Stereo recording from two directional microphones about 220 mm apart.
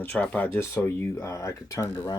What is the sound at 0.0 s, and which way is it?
Speech, 5° left (ahead or behind).